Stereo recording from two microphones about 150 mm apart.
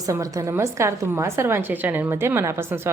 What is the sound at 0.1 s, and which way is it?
A woman's voice, 20° right (ahead or behind).